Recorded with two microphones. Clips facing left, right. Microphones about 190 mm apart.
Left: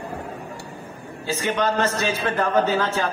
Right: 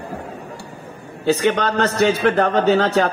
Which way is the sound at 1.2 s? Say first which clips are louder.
Right 6 dB; 65° right (ahead or behind).